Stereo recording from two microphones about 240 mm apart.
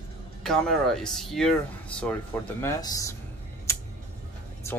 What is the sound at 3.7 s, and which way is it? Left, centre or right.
Tick-tock, centre.